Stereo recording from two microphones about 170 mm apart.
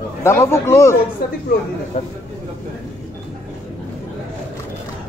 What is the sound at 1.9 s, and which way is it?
Speech, 45° left (ahead or behind).